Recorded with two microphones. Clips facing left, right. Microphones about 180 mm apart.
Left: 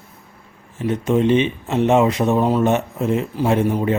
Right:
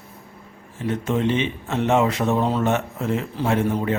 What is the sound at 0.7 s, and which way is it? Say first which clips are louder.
A man's voice: left 5 dB; 15° left (ahead or behind).